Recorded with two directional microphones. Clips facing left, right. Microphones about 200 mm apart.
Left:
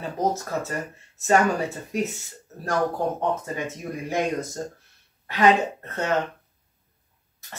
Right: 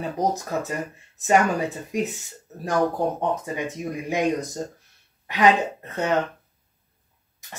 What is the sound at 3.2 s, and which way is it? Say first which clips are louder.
Speech: right 1 dB; 15° right (ahead or behind).